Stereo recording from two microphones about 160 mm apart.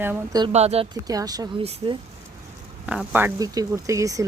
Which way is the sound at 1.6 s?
40° right (ahead or behind).